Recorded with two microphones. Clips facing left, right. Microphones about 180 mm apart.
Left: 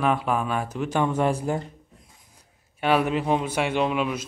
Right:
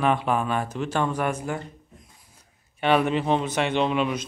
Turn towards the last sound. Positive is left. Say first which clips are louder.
# right 1 dB
turn(degrees=5)  # may be behind; listen again after turning